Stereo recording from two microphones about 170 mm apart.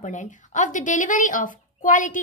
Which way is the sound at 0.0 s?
45° left (ahead or behind).